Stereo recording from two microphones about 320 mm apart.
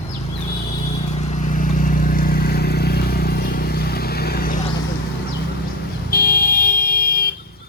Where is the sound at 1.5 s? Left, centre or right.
Left.